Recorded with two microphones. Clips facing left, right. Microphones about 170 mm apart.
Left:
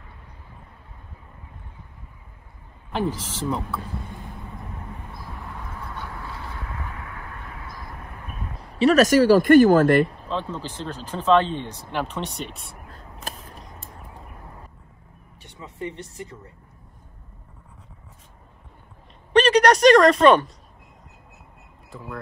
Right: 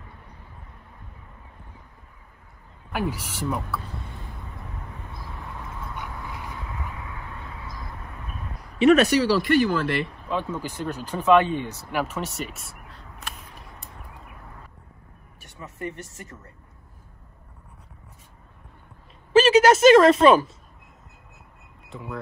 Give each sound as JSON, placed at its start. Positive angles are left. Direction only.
{"t": 2.9, "sound": "speech", "side_deg": -10}
{"t": 5.9, "sound": "a sound", "side_deg": -15}
{"t": 8.5, "sound": "speech", "side_deg": 35}
{"t": 10.2, "sound": "speech", "side_deg": -10}
{"t": 12.8, "sound": "crow", "side_deg": 40}
{"t": 19.3, "sound": "speech", "side_deg": -5}